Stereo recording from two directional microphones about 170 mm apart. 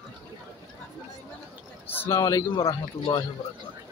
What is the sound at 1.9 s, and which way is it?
A man's voice, 15° left (ahead or behind).